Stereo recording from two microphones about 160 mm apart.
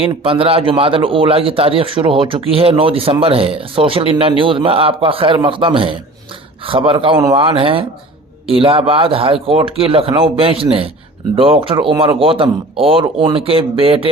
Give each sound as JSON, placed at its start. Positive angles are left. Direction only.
{"t": 0.0, "sound": "a man's voice", "side_deg": -35}